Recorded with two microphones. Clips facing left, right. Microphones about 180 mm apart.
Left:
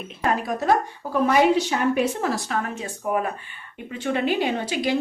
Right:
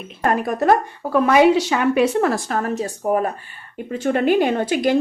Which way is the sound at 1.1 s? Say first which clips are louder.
Right 4 dB; 85° right.